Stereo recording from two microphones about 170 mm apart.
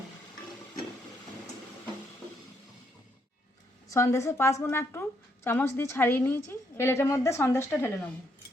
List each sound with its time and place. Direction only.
3.9 s a woman's voice: 15° left (ahead or behind)